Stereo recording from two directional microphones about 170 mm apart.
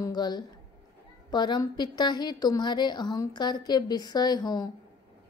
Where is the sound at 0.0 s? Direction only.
25° left (ahead or behind).